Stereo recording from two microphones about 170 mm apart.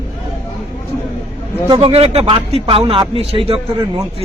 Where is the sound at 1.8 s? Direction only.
35° right (ahead or behind).